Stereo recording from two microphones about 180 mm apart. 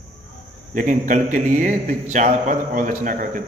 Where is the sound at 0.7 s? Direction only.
45° right (ahead or behind).